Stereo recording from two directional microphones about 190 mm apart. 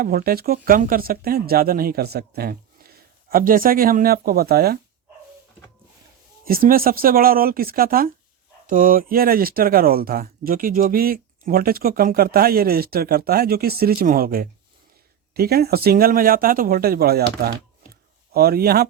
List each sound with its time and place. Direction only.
0.0 s speech: 50° right (ahead or behind)
6.4 s speech: 50° right (ahead or behind)